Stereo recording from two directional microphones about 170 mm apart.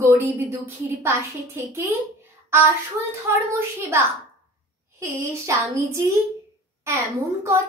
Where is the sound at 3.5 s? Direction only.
15° right (ahead or behind).